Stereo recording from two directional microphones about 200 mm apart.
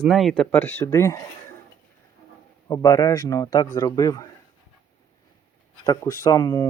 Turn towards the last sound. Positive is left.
turn(degrees=15)  # may be behind; listen again after turning